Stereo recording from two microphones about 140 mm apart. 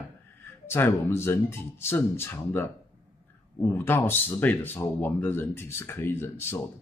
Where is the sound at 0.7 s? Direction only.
15° left (ahead or behind).